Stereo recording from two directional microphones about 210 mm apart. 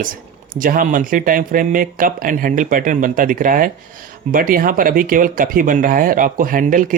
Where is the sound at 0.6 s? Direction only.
40° right (ahead or behind).